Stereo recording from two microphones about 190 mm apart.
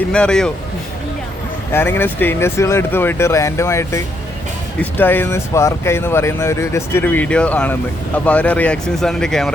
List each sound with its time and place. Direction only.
0.1 s speech: 5° left (ahead or behind)
1.7 s speech: 10° left (ahead or behind)